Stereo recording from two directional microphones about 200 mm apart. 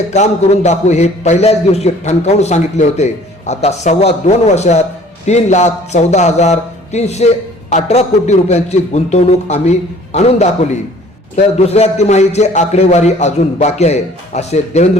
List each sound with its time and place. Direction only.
0.1 s a man's voice: 35° left (ahead or behind)